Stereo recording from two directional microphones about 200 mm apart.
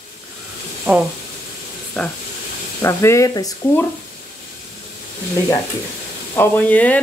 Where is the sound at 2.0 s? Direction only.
5° left (ahead or behind).